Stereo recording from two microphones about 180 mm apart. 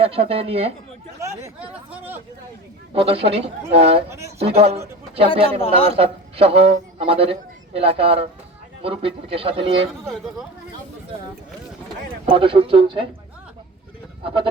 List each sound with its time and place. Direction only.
0.0 s speech: 35° right (ahead or behind)
1.2 s speech: 15° right (ahead or behind)
2.9 s speech: 30° right (ahead or behind)
5.3 s a man's voice: 30° left (ahead or behind)
6.0 s a man's voice: 30° right (ahead or behind)
12.2 s speech: 30° right (ahead or behind)